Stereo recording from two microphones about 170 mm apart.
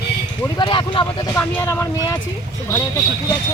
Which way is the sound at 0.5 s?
30° left (ahead or behind).